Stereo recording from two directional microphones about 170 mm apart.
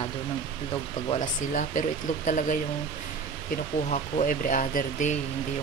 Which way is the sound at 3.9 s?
50° left (ahead or behind).